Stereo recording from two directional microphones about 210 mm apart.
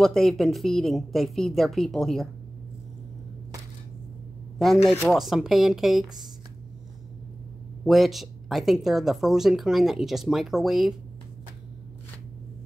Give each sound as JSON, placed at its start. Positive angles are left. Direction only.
{"t": 0.0, "sound": "speech", "side_deg": 0}
{"t": 5.0, "sound": "speech", "side_deg": 0}
{"t": 7.8, "sound": "speech", "side_deg": 0}